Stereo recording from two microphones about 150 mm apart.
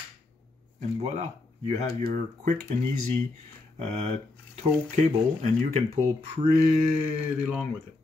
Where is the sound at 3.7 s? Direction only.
45° right (ahead or behind).